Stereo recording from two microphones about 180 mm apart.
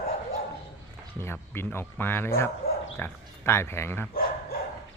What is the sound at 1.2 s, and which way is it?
Speech, 15° left (ahead or behind).